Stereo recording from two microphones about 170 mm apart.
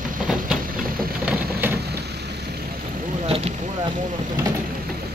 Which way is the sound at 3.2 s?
35° right (ahead or behind).